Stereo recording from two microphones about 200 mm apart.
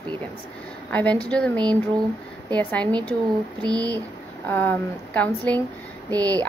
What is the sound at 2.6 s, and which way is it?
A woman's voice, 10° left (ahead or behind).